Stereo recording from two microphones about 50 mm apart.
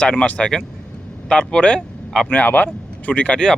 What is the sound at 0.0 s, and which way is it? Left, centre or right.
Speech, left.